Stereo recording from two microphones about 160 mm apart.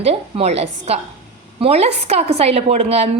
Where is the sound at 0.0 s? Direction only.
40° right (ahead or behind).